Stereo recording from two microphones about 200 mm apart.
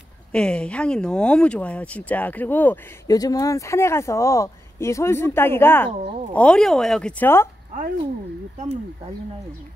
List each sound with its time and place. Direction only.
0.3 s speech: 5° left (ahead or behind)